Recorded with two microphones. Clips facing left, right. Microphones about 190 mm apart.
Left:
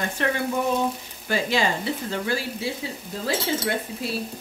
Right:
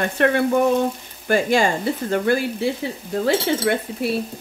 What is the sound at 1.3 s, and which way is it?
Speech, 50° right (ahead or behind).